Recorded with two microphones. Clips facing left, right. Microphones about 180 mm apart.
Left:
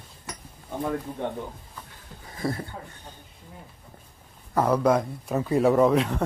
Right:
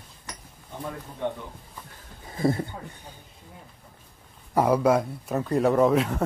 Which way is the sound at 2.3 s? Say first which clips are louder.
Right 5 dB; 25° right (ahead or behind).